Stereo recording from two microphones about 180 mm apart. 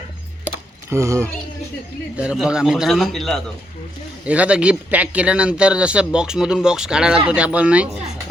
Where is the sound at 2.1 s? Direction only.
5° right (ahead or behind).